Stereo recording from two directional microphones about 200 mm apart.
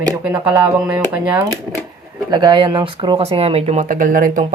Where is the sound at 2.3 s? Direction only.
20° right (ahead or behind).